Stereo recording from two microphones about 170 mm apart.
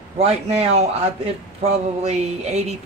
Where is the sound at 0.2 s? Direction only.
40° right (ahead or behind).